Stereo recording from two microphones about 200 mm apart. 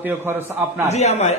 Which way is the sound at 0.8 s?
35° left (ahead or behind).